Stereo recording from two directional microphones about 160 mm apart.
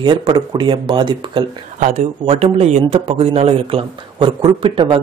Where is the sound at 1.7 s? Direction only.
50° right (ahead or behind).